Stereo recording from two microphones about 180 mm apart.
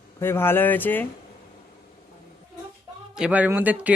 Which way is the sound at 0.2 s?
15° left (ahead or behind).